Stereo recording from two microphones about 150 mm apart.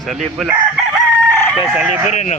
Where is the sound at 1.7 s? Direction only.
5° right (ahead or behind).